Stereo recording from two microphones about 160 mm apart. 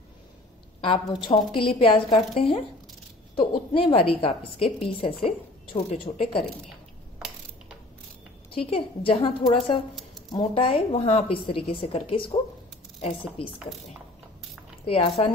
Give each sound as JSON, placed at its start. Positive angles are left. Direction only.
{"t": 0.7, "sound": "a woman's voice", "side_deg": 35}
{"t": 8.5, "sound": "a woman's voice", "side_deg": 35}
{"t": 13.6, "sound": "speech", "side_deg": 0}
{"t": 14.9, "sound": "a woman's voice", "side_deg": 35}